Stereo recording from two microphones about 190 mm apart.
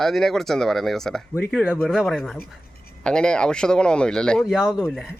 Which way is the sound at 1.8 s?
Centre (ahead or behind).